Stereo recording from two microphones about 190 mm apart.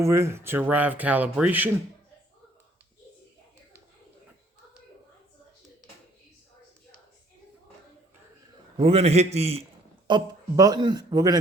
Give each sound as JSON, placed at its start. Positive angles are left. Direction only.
{"t": 0.0, "sound": "speech", "side_deg": -15}
{"t": 8.8, "sound": "a man's voice", "side_deg": -30}
{"t": 10.1, "sound": "a man's voice", "side_deg": -20}